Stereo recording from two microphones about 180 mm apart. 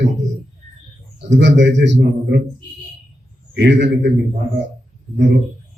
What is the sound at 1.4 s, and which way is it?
Speech, 80° right.